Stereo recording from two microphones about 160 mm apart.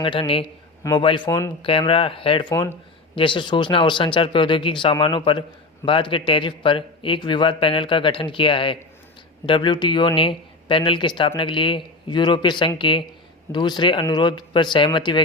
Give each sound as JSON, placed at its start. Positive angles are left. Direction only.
{"t": 0.0, "sound": "a man's voice", "side_deg": 35}
{"t": 2.5, "sound": "speech", "side_deg": 20}
{"t": 3.2, "sound": "a man's voice", "side_deg": 30}